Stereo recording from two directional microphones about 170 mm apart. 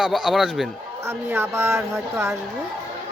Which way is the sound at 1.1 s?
15° right (ahead or behind).